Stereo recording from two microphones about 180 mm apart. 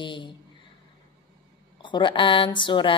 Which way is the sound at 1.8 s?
25° left (ahead or behind).